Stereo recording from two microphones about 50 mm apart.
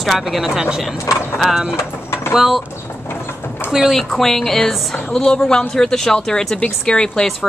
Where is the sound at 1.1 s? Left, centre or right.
Left.